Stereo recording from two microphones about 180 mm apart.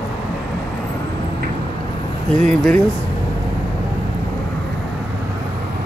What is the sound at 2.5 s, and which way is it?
Speech, 5° left (ahead or behind).